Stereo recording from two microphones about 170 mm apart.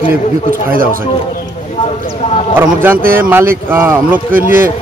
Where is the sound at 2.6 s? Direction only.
10° right (ahead or behind).